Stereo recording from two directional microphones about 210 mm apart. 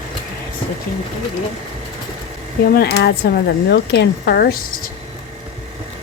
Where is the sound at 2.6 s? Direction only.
45° left (ahead or behind).